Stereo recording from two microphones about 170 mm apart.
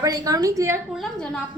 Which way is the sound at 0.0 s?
20° right (ahead or behind).